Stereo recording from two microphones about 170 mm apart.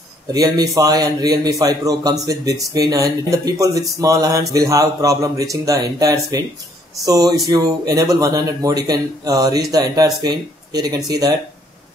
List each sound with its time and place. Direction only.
0.3 s a man's voice: 20° right (ahead or behind)